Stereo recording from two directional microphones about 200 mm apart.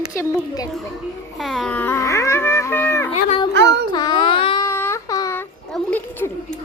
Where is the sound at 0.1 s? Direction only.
15° left (ahead or behind).